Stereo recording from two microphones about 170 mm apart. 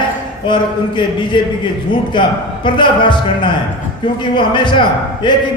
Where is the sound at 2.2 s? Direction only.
30° left (ahead or behind).